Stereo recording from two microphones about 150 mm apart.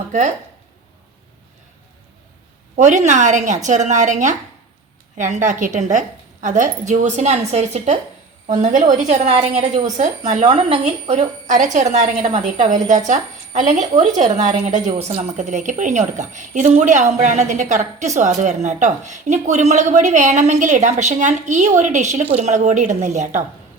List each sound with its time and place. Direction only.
2.7 s a woman's voice: 55° right (ahead or behind)
10.5 s speech: 35° right (ahead or behind)
11.1 s a woman's voice: 55° right (ahead or behind)